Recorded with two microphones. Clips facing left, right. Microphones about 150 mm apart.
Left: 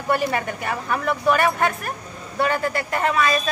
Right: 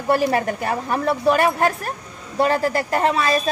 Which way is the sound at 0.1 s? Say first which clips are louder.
Right 4 dB; 35° right (ahead or behind).